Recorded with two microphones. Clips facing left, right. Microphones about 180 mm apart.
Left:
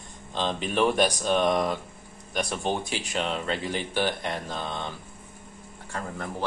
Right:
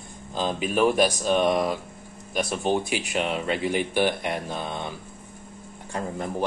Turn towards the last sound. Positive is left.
turn(degrees=-15)  # may be behind; listen again after turning